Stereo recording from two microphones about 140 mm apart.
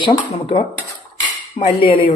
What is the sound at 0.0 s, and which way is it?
Dishes, 35° left (ahead or behind).